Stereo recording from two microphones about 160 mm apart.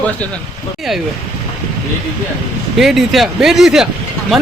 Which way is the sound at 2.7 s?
Centre (ahead or behind).